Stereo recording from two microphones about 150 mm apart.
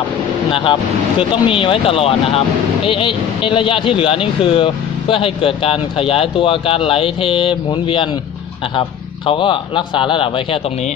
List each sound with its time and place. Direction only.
0.5 s speech: 35° left (ahead or behind)